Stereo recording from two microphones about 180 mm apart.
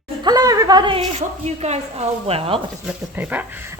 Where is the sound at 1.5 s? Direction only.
40° right (ahead or behind).